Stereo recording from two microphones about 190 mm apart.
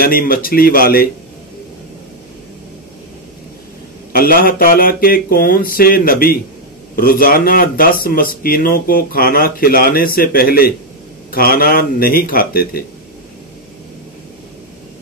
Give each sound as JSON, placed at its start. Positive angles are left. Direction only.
{"t": 0.0, "sound": "speech", "side_deg": 50}
{"t": 4.1, "sound": "speech", "side_deg": 50}